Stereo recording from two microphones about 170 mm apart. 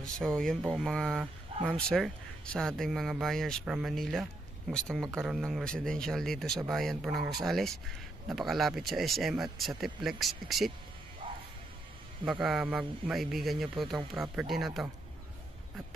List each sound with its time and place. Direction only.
0.0 s speech: 5° left (ahead or behind)
11.2 s music: 30° right (ahead or behind)
12.3 s speech: centre (ahead or behind)